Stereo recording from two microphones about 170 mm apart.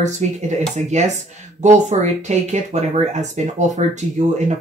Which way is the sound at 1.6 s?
40° right (ahead or behind).